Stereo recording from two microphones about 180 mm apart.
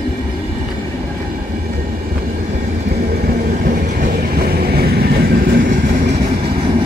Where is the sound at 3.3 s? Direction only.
50° right (ahead or behind).